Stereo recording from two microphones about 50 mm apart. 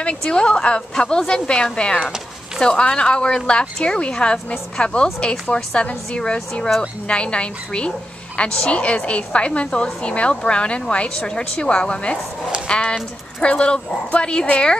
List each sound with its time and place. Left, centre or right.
0.0 s a woman's voice: centre